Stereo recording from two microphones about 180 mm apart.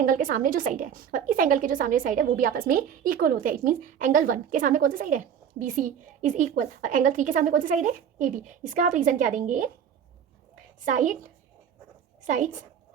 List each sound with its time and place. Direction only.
0.0 s a woman's voice: 50° right (ahead or behind)
10.8 s a woman's voice: 45° right (ahead or behind)
12.2 s a woman's voice: 45° right (ahead or behind)